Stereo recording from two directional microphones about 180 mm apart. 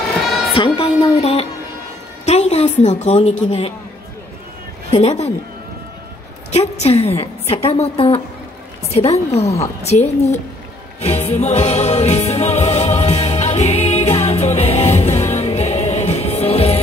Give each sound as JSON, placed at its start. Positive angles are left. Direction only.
{"t": 0.6, "sound": "music", "side_deg": 30}
{"t": 2.2, "sound": "a woman's voice", "side_deg": 40}
{"t": 4.9, "sound": "a woman's voice", "side_deg": 35}
{"t": 6.5, "sound": "a woman's voice", "side_deg": 35}
{"t": 11.0, "sound": "music", "side_deg": 35}